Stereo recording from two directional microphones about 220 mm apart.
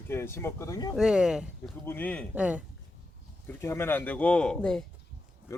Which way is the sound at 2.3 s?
5° right (ahead or behind).